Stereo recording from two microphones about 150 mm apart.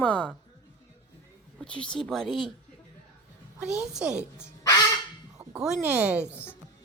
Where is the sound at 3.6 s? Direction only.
5° right (ahead or behind).